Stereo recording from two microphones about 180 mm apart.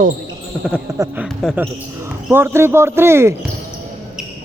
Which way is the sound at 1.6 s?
15° right (ahead or behind).